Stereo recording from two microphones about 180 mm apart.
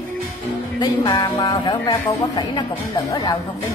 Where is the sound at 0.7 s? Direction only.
25° left (ahead or behind).